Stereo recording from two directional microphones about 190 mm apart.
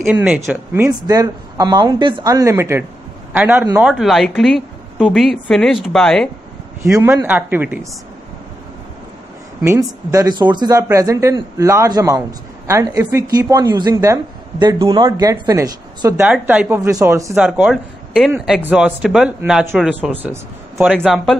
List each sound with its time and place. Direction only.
0.0 s speech: 5° right (ahead or behind)
1.0 s a woman's voice: 20° right (ahead or behind); by 6.3 s 5° left (ahead or behind)
6.8 s speech: 10° right (ahead or behind)
9.6 s speech: 15° right (ahead or behind)
16.3 s speech: 10° right (ahead or behind)
17.5 s a man's voice: 5° right (ahead or behind)